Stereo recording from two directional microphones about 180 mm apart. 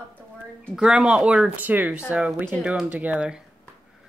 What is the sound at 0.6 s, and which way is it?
Speech, centre (ahead or behind).